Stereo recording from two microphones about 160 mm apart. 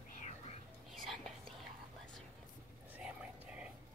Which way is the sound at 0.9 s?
Centre (ahead or behind).